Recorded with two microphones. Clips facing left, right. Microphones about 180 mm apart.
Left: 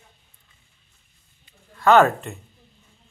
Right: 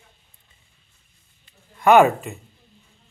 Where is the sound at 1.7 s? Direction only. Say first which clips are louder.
Right 2 dB; 15° right (ahead or behind).